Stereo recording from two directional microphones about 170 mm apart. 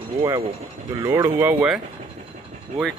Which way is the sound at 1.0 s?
25° right (ahead or behind).